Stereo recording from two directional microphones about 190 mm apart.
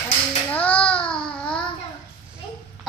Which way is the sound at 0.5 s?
5° left (ahead or behind).